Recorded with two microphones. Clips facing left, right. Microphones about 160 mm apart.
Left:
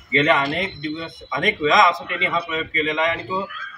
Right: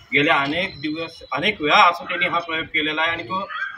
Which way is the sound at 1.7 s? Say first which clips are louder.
Even; centre (ahead or behind).